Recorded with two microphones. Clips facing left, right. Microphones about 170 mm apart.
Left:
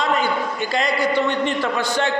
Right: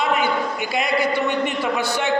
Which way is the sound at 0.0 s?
10° right (ahead or behind).